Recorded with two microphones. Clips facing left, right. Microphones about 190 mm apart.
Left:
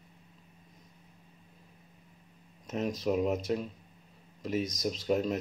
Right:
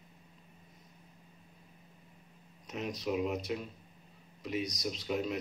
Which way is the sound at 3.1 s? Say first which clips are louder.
Left 4 dB; 40° left (ahead or behind).